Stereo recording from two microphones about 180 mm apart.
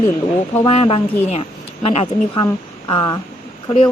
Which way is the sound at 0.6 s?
30° left (ahead or behind).